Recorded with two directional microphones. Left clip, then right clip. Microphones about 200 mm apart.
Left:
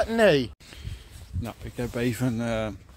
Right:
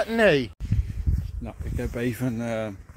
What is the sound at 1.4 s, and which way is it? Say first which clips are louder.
Speech: left 1 dB; 10° left (ahead or behind).